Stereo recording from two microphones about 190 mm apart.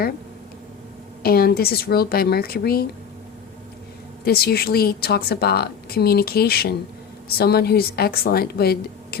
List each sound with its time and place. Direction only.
1.2 s speech: 55° left (ahead or behind)
4.2 s a woman's voice: 55° left (ahead or behind)